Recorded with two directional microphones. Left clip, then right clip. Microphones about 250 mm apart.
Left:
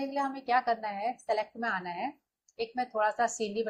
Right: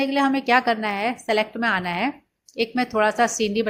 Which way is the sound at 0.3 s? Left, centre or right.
Right.